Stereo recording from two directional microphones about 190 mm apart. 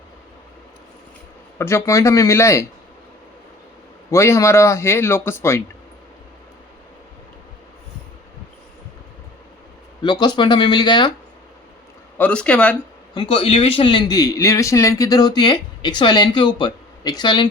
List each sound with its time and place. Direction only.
1.5 s a man's voice: 15° left (ahead or behind)
4.1 s a man's voice: 15° left (ahead or behind)
10.0 s a man's voice: 25° left (ahead or behind)
12.1 s speech: 5° left (ahead or behind)
13.1 s a man's voice: 30° left (ahead or behind)